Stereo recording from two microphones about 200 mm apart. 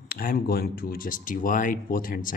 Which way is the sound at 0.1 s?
45° left (ahead or behind).